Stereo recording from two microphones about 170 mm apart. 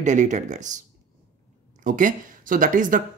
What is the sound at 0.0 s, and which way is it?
Speech, 45° right (ahead or behind).